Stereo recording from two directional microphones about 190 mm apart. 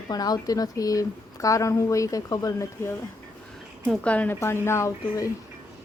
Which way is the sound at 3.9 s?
5° left (ahead or behind).